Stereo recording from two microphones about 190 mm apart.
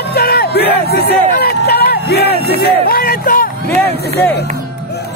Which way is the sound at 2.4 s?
55° left (ahead or behind).